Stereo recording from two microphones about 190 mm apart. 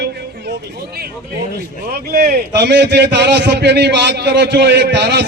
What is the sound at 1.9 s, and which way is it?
A man's voice, 50° right (ahead or behind).